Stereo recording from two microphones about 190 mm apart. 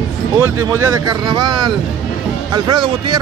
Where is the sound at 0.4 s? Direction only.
15° right (ahead or behind).